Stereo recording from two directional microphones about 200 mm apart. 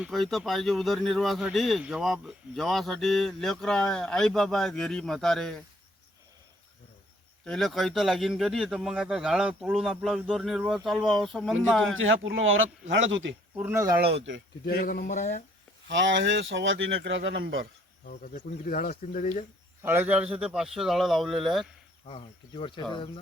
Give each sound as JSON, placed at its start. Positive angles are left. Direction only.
{"t": 0.0, "sound": "speech", "side_deg": 0}
{"t": 7.4, "sound": "speech", "side_deg": 0}
{"t": 11.9, "sound": "speech", "side_deg": -75}
{"t": 13.6, "sound": "speech", "side_deg": -10}
{"t": 13.9, "sound": "speech", "side_deg": -55}
{"t": 14.6, "sound": "speech", "side_deg": 45}
{"t": 15.9, "sound": "speech", "side_deg": -65}
{"t": 18.0, "sound": "speech", "side_deg": 40}
{"t": 19.8, "sound": "speech", "side_deg": -10}
{"t": 22.0, "sound": "speech", "side_deg": 25}